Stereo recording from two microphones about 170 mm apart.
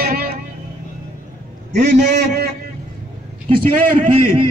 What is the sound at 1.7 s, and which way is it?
Speech, 45° right (ahead or behind).